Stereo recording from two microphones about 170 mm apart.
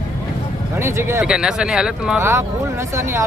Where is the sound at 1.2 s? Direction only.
5° right (ahead or behind).